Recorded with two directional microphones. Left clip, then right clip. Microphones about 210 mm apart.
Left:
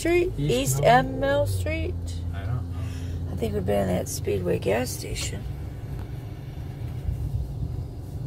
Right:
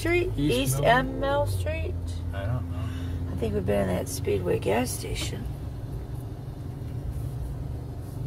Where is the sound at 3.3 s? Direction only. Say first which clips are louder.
Left 1 dB; 20° left (ahead or behind).